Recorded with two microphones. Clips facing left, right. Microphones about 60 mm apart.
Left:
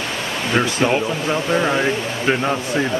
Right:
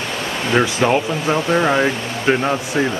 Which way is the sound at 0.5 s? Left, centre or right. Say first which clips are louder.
Right 2 dB; centre.